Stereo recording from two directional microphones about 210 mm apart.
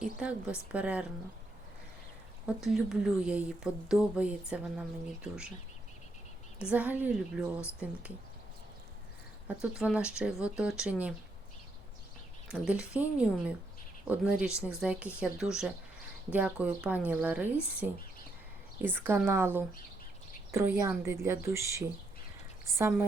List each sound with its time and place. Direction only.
0.0 s speech: 5° right (ahead or behind)
2.6 s speech: centre (ahead or behind)
6.6 s speech: 5° right (ahead or behind)
9.6 s speech: 5° right (ahead or behind)
12.5 s speech: 5° right (ahead or behind)
18.9 s a woman's voice: 10° right (ahead or behind)